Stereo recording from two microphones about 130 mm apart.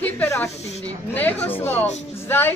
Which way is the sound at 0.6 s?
55° left (ahead or behind).